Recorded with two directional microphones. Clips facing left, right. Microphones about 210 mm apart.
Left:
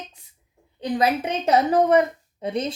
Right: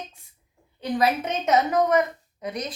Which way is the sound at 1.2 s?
30° left (ahead or behind).